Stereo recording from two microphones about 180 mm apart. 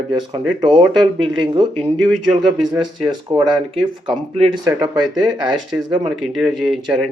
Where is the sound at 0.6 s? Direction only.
25° right (ahead or behind).